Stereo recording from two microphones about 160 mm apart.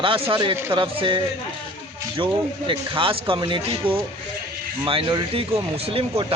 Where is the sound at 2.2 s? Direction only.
30° right (ahead or behind).